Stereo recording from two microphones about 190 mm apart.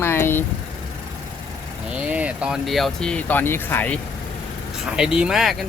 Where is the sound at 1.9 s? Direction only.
5° right (ahead or behind); by 3.9 s 10° left (ahead or behind).